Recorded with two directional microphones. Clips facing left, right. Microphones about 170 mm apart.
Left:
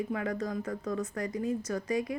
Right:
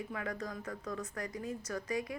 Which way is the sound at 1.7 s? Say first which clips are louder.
Left 2 dB; 25° left (ahead or behind).